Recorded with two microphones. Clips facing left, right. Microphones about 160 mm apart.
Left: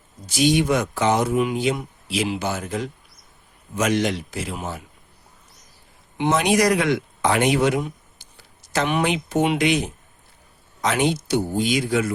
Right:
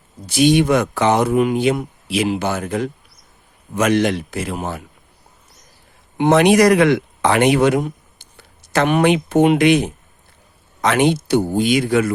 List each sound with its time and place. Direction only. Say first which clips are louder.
0.3 s speech: right 5 dB; 60° right (ahead or behind)
6.1 s speech: right 7 dB; 60° right (ahead or behind)